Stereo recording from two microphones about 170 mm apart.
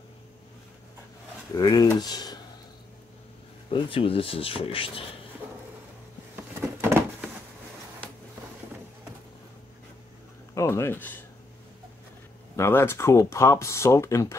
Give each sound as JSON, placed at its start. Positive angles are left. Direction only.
{"t": 1.6, "sound": "speech", "side_deg": 25}
{"t": 3.7, "sound": "speech", "side_deg": 30}
{"t": 6.8, "sound": "a sound", "side_deg": -15}
{"t": 10.5, "sound": "speech", "side_deg": 15}
{"t": 12.5, "sound": "speech", "side_deg": 15}